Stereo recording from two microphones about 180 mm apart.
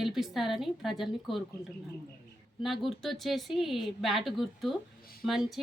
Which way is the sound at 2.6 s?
Centre (ahead or behind).